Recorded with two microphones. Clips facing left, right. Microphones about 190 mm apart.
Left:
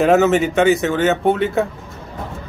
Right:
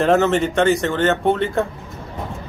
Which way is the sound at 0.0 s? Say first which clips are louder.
Left 2 dB; 5° left (ahead or behind).